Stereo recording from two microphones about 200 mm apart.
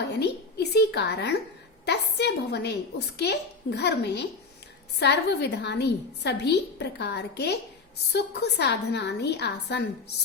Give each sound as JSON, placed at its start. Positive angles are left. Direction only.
{"t": 0.1, "sound": "a woman's voice", "side_deg": 55}